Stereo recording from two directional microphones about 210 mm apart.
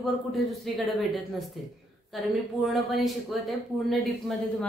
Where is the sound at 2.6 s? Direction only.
Centre (ahead or behind).